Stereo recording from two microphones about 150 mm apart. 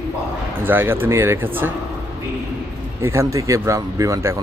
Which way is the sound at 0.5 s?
15° right (ahead or behind).